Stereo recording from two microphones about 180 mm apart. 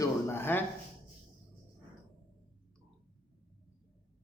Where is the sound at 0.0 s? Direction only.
15° left (ahead or behind).